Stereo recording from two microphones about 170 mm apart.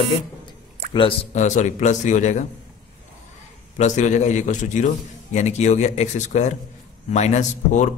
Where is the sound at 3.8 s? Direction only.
45° left (ahead or behind).